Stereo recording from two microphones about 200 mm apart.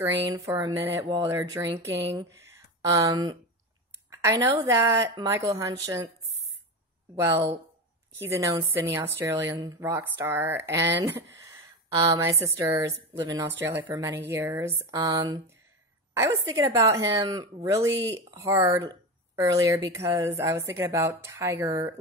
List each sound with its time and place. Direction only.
0.1 s a woman's voice: 15° right (ahead or behind)
7.2 s a woman's voice: 15° right (ahead or behind)